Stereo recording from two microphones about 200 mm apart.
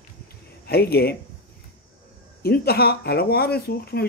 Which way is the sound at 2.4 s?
50° left (ahead or behind).